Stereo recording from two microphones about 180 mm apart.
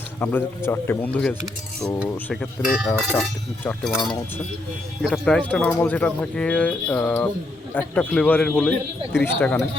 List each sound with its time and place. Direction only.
0.2 s speech: 10° left (ahead or behind)
5.0 s speech: 5° left (ahead or behind)